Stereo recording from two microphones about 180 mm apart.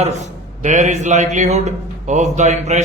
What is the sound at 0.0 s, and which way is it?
A man's voice, 40° right (ahead or behind).